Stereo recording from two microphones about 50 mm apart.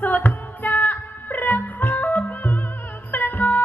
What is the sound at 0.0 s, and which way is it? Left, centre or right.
Music, left.